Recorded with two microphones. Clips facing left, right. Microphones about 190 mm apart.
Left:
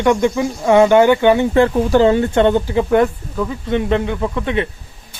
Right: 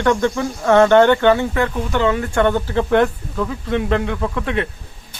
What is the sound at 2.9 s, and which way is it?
Speech, 5° left (ahead or behind).